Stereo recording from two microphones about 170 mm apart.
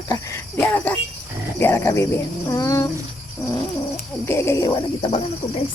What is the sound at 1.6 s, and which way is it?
Speech, 15° left (ahead or behind).